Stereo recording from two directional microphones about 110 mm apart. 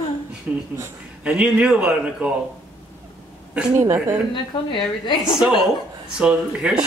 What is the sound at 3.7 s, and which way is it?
Speech, 25° right (ahead or behind).